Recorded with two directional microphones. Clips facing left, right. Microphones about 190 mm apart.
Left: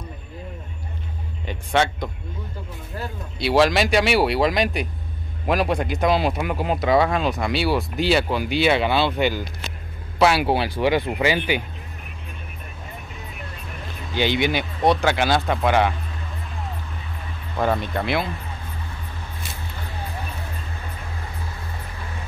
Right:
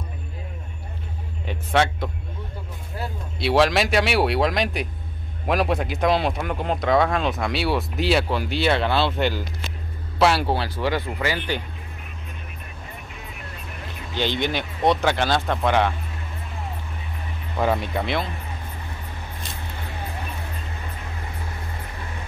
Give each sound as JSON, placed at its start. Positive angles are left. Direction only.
{"t": 1.4, "sound": "speech", "side_deg": 0}
{"t": 3.3, "sound": "speech", "side_deg": 0}
{"t": 10.4, "sound": "speech", "side_deg": 15}
{"t": 14.1, "sound": "speech", "side_deg": 10}
{"t": 17.6, "sound": "speech", "side_deg": -5}